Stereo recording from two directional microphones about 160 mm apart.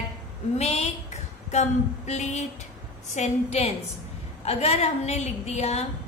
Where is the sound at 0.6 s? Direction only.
40° left (ahead or behind).